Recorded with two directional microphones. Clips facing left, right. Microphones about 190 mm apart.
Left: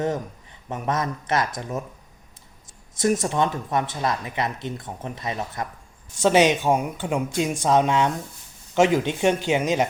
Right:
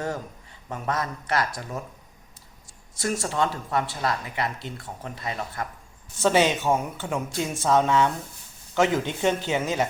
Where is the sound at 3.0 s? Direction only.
20° left (ahead or behind).